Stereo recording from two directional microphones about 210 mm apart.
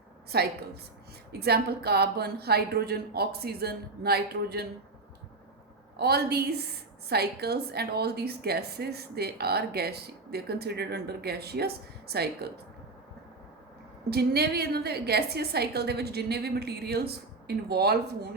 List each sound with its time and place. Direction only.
0.3 s a woman's voice: 50° right (ahead or behind)
6.0 s a woman's voice: 50° right (ahead or behind)
14.1 s a woman's voice: 50° right (ahead or behind)